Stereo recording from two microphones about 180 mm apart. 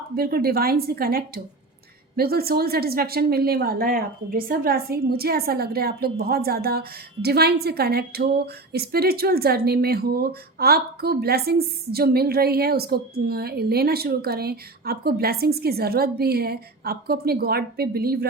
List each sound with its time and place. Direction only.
0.2 s speech: 60° right (ahead or behind)